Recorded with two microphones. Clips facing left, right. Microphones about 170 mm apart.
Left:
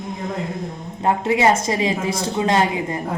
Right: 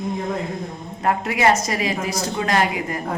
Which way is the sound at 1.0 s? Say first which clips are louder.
Left 2 dB; 25° left (ahead or behind).